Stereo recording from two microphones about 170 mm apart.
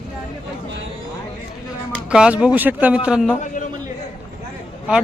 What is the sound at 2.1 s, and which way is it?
A man's voice, 5° right (ahead or behind).